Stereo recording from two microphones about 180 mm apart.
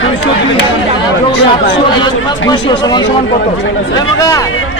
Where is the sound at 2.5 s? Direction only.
20° left (ahead or behind).